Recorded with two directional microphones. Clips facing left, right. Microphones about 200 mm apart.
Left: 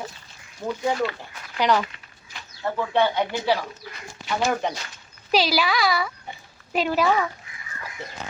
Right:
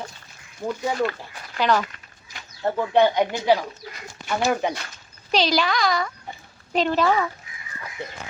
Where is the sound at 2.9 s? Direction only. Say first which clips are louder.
Right 4 dB; 15° right (ahead or behind).